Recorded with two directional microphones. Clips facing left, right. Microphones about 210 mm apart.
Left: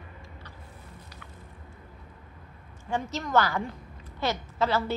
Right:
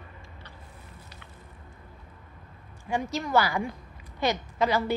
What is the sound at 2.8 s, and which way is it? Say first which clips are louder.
A woman's voice: right 2 dB; 10° right (ahead or behind).